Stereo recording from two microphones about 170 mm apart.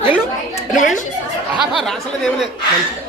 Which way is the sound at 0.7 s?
50° left (ahead or behind).